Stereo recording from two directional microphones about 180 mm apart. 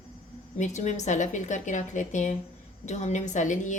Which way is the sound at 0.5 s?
40° left (ahead or behind).